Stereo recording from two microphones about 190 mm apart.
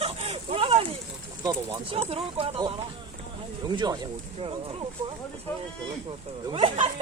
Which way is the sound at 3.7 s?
20° right (ahead or behind).